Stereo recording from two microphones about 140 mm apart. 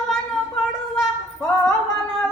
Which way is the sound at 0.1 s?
Centre (ahead or behind).